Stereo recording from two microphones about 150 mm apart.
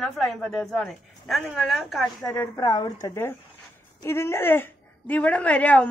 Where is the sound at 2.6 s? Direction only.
25° left (ahead or behind).